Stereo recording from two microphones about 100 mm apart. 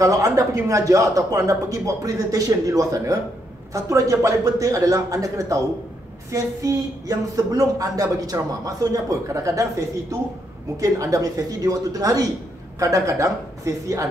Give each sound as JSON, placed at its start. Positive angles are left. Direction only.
{"t": 0.0, "sound": "speech", "side_deg": -35}